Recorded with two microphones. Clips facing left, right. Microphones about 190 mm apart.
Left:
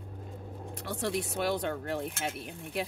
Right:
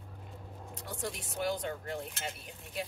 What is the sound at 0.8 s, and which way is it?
Speech, 75° left (ahead or behind).